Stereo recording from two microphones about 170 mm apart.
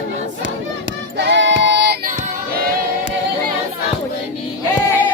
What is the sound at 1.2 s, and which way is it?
Child singing, 90° right.